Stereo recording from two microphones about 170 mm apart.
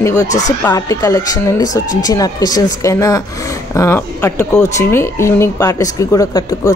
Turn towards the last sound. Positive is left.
turn(degrees=20)  # may be behind; listen again after turning